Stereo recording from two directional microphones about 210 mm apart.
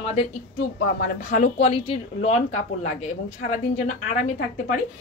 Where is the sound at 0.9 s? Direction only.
40° left (ahead or behind).